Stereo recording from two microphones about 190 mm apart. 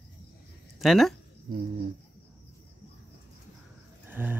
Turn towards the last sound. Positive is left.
turn(degrees=-10)  # may be behind; listen again after turning